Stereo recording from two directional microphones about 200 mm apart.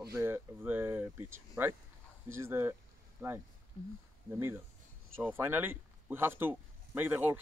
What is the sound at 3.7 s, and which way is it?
Speech, 30° left (ahead or behind).